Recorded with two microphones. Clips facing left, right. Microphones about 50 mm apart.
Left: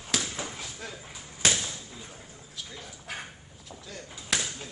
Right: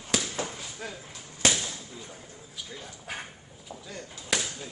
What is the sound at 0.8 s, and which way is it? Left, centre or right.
Speech, centre.